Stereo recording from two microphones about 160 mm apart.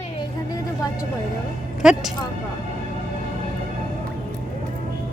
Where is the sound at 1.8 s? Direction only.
5° right (ahead or behind).